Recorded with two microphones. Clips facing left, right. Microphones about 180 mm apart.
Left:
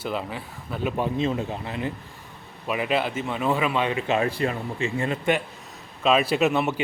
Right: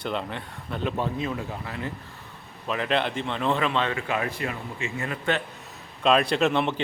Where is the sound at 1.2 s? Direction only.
25° left (ahead or behind).